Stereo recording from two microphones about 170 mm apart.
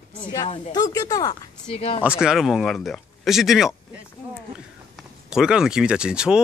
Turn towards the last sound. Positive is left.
turn(degrees=-5)  # may be behind; listen again after turning